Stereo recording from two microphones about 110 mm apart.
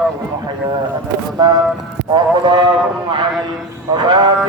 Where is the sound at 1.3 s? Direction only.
35° right (ahead or behind).